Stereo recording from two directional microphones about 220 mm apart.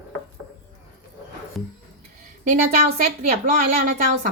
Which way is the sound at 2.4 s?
35° right (ahead or behind).